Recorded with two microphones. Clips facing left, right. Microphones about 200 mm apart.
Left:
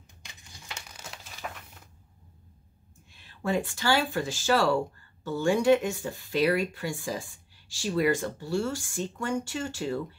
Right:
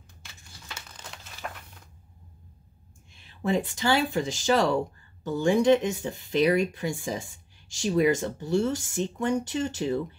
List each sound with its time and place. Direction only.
0.2 s crumpling: 15° left (ahead or behind); by 1.6 s centre (ahead or behind)
3.3 s speech: 20° right (ahead or behind)